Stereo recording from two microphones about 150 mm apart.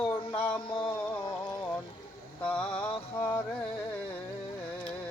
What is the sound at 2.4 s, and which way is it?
Mantra, 10° left (ahead or behind).